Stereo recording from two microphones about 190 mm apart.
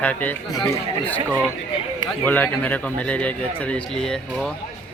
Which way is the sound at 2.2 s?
10° left (ahead or behind).